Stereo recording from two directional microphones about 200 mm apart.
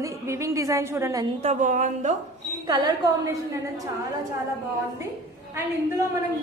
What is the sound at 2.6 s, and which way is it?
Speech, 20° right (ahead or behind).